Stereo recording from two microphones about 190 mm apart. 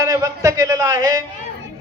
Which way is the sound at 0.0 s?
15° right (ahead or behind).